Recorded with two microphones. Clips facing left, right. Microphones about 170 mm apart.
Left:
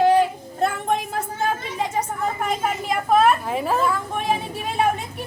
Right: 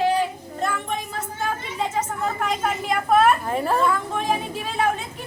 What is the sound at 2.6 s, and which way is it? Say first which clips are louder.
Speech: even; centre (ahead or behind).